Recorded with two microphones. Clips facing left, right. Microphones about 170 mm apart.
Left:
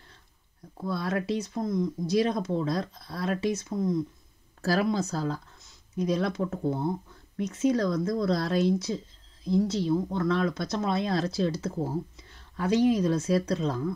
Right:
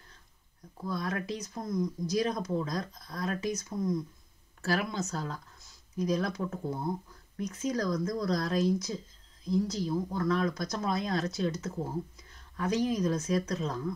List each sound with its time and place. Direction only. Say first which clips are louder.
0.7 s speech: left 4 dB; 30° left (ahead or behind)
4.6 s speech: left 6 dB; 35° left (ahead or behind)